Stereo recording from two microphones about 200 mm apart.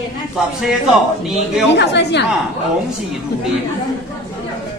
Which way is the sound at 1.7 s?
60° left (ahead or behind).